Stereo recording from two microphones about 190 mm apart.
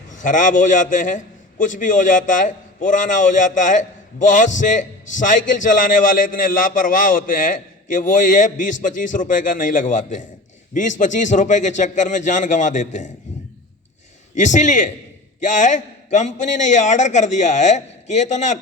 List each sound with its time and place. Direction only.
0.2 s a man's voice: 40° left (ahead or behind)
14.3 s a man's voice: 40° left (ahead or behind)